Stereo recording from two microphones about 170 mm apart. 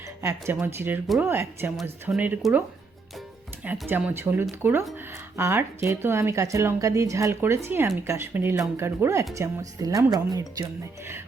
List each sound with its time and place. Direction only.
0.2 s speech: 15° right (ahead or behind)
1.7 s speech: centre (ahead or behind); by 10.7 s 20° right (ahead or behind)